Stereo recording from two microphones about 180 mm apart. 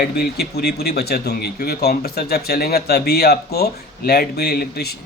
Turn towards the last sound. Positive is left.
turn(degrees=60)  # may be behind; listen again after turning